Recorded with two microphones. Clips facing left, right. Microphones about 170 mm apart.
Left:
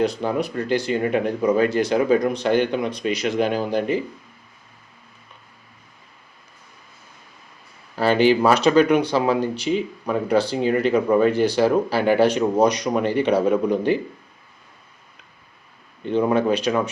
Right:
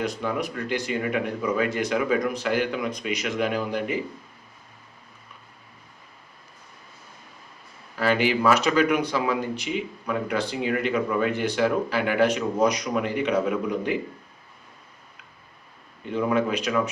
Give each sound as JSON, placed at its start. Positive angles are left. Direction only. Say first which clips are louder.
{"t": 0.0, "sound": "speech", "louder": "left 6 dB", "side_deg": 30}
{"t": 7.9, "sound": "speech", "louder": "left 6 dB", "side_deg": 30}
{"t": 16.0, "sound": "speech", "louder": "left 5 dB", "side_deg": 30}